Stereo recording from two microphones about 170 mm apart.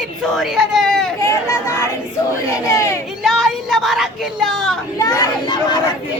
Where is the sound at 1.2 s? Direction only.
15° left (ahead or behind).